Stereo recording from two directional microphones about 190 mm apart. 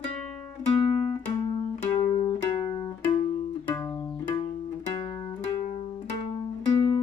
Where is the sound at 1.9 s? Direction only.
25° left (ahead or behind).